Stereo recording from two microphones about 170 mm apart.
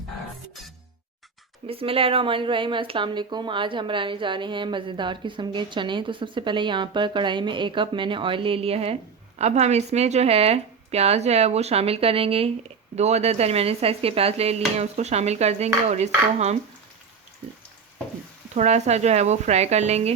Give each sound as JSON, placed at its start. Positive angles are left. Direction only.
{"t": 1.6, "sound": "a woman's voice", "side_deg": -35}
{"t": 18.5, "sound": "a woman's voice", "side_deg": -40}